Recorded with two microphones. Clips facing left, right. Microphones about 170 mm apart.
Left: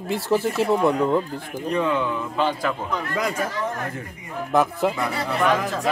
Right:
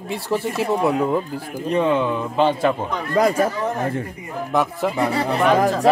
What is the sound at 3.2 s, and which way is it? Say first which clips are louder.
Speech: right 10 dB; 35° right (ahead or behind).